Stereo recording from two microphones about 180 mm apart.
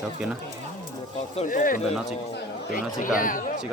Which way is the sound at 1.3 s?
45° left (ahead or behind).